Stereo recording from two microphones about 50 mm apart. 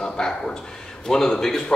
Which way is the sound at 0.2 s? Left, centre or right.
Centre.